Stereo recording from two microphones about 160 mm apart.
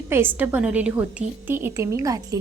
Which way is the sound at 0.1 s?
15° right (ahead or behind).